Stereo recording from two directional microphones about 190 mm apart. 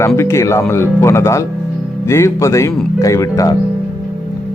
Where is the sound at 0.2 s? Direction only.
15° left (ahead or behind).